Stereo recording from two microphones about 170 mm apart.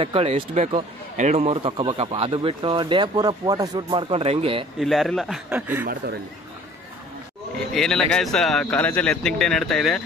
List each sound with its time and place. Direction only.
0.0 s speech: 35° right (ahead or behind)
4.1 s speech: 35° right (ahead or behind)
4.7 s speech: centre (ahead or behind)
7.7 s speech: 5° left (ahead or behind)